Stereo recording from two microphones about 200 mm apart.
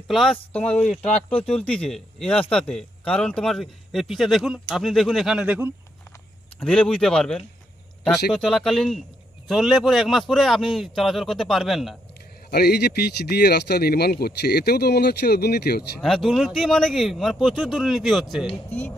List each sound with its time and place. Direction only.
0.1 s speech: centre (ahead or behind)
6.6 s speech: 5° left (ahead or behind)
12.4 s speech: 50° left (ahead or behind)
16.0 s speech: centre (ahead or behind)